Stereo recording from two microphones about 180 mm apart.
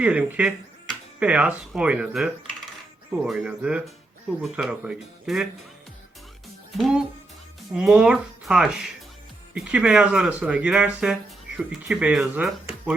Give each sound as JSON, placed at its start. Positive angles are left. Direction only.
{"t": 0.0, "sound": "speech", "side_deg": -5}
{"t": 6.7, "sound": "speech", "side_deg": 0}